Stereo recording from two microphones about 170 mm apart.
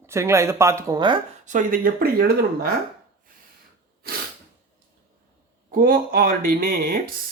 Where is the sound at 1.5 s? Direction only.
55° right (ahead or behind).